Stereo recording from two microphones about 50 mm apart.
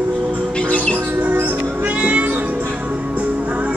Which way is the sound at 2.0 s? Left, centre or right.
Right.